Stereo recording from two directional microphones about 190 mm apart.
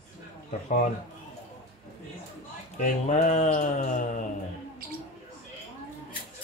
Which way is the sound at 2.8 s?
40° left (ahead or behind).